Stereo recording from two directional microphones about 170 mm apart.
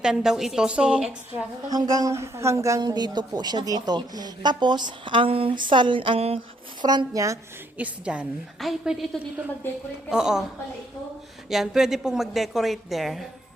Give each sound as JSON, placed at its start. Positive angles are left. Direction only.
{"t": 0.0, "sound": "a woman's voice", "side_deg": -5}
{"t": 1.7, "sound": "speech", "side_deg": -20}
{"t": 6.8, "sound": "speech", "side_deg": -20}
{"t": 7.8, "sound": "a woman's voice", "side_deg": -10}
{"t": 11.4, "sound": "a woman's voice", "side_deg": 0}